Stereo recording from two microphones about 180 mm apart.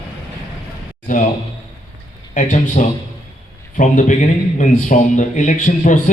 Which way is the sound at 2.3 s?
45° left (ahead or behind).